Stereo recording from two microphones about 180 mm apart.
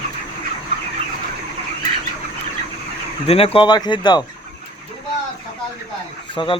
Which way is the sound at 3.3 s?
30° left (ahead or behind).